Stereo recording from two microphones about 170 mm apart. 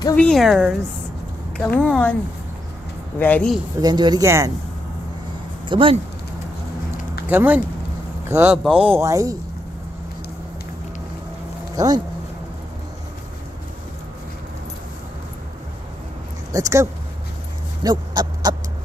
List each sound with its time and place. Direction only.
0.1 s speech: 5° left (ahead or behind)
1.8 s speech: 5° left (ahead or behind)
3.2 s speech: 10° left (ahead or behind)
3.8 s speech: 25° right (ahead or behind)
5.7 s speech: 30° right (ahead or behind)
7.2 s speech: 10° right (ahead or behind)
11.7 s speech: 20° right (ahead or behind)
16.5 s speech: 20° right (ahead or behind)
17.8 s owl: 25° right (ahead or behind)